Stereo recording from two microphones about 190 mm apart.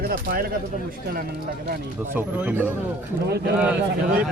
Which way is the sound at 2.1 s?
10° right (ahead or behind).